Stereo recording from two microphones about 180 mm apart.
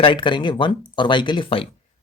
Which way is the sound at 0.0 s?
25° left (ahead or behind).